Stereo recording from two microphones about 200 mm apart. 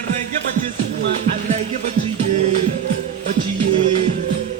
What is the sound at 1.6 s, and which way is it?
Music, 35° right (ahead or behind).